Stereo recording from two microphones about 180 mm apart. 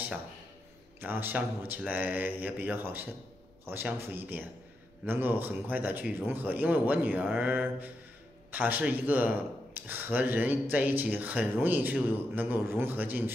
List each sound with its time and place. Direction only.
1.0 s speech: 10° right (ahead or behind)